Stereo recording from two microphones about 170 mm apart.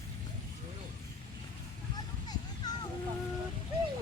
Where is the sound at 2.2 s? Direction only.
25° left (ahead or behind).